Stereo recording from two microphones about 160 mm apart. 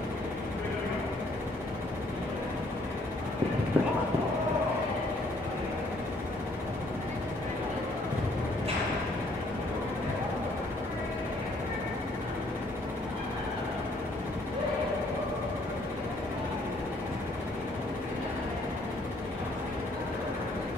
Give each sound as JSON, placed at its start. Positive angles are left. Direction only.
{"t": 3.8, "sound": "music", "side_deg": -10}